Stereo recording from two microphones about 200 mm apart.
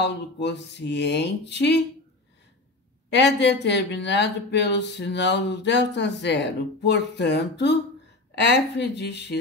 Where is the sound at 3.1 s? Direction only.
60° left (ahead or behind).